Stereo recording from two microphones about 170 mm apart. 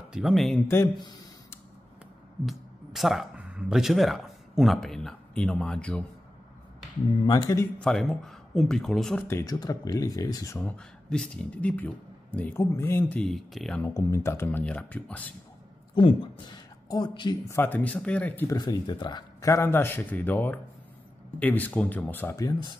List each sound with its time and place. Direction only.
0.1 s speech: centre (ahead or behind)
0.7 s a sound: 20° left (ahead or behind)
2.4 s speech: centre (ahead or behind)
7.2 s speech: 20° left (ahead or behind)
7.8 s speech: 5° left (ahead or behind)
9.3 s speech: 20° left (ahead or behind)
10.6 s speech: 5° left (ahead or behind)
13.2 s speech: centre (ahead or behind)
15.9 s speech: 30° left (ahead or behind)
17.5 s speech: 10° left (ahead or behind)
18.6 s speech: 25° left (ahead or behind)